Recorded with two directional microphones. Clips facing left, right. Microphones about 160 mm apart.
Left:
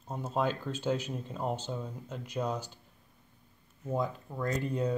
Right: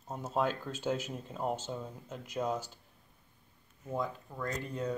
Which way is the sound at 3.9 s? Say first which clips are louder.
Left 3 dB; 15° left (ahead or behind).